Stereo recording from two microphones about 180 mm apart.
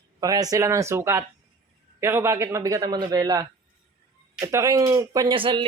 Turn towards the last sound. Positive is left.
turn(degrees=-30)  # may be behind; listen again after turning